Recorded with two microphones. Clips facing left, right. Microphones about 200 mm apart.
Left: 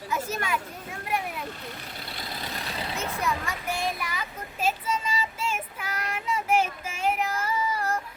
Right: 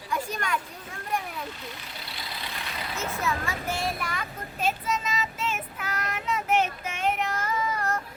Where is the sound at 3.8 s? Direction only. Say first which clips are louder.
Even; centre (ahead or behind).